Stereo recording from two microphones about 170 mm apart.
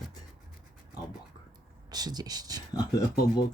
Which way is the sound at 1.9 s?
25° right (ahead or behind).